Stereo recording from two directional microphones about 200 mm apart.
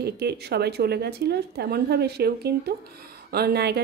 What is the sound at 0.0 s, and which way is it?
A woman's voice, 55° right (ahead or behind).